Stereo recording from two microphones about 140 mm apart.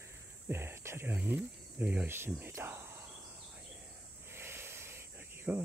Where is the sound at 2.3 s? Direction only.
15° right (ahead or behind).